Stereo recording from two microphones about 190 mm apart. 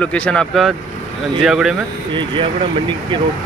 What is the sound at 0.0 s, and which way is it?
Speech, 5° left (ahead or behind).